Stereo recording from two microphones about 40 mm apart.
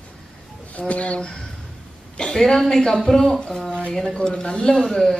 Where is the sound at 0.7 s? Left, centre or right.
Left.